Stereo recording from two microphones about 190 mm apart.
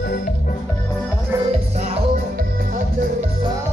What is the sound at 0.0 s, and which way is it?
Music, 55° left (ahead or behind).